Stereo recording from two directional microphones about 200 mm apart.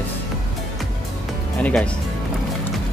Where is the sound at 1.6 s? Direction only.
5° left (ahead or behind).